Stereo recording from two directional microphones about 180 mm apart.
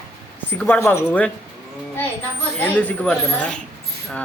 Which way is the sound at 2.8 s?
5° left (ahead or behind).